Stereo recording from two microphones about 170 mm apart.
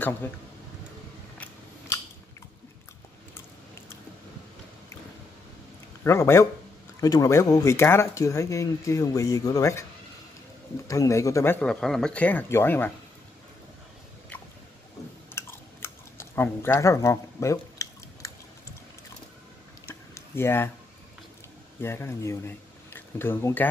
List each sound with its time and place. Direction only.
6.0 s speech: 15° left (ahead or behind)
10.9 s speech: 20° left (ahead or behind)
11.6 s speech: 5° left (ahead or behind)
15.3 s chewing: 15° left (ahead or behind)
20.2 s speech: 15° left (ahead or behind)
21.8 s speech: 15° left (ahead or behind)